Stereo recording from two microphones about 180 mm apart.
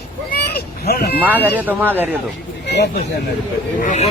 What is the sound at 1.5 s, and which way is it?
Speech, 10° right (ahead or behind).